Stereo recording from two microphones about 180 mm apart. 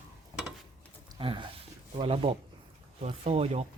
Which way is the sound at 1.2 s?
30° right (ahead or behind).